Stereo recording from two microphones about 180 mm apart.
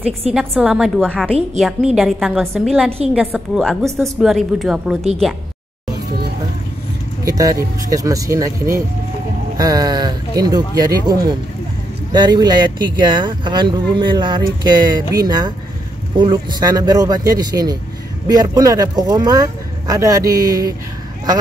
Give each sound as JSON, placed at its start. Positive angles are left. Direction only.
{"t": 0.3, "sound": "a woman's voice", "side_deg": 0}
{"t": 7.2, "sound": "speech", "side_deg": -20}